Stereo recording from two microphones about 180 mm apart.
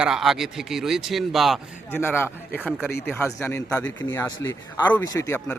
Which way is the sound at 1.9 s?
10° left (ahead or behind).